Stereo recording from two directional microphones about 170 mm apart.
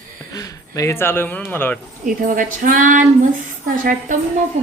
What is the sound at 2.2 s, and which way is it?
Speech, 55° right (ahead or behind).